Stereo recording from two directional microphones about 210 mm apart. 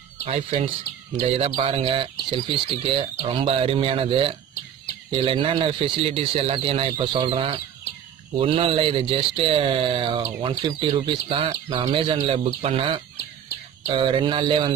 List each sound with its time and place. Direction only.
0.2 s speech: 30° right (ahead or behind)